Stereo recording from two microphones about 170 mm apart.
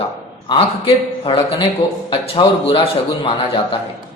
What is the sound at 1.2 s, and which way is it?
Speech, 30° left (ahead or behind).